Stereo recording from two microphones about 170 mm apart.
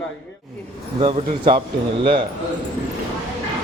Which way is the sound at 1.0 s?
30° right (ahead or behind).